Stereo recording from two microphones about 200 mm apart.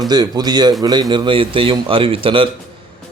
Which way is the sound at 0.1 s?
20° right (ahead or behind).